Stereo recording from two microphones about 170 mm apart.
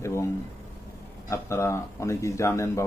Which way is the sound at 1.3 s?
15° left (ahead or behind).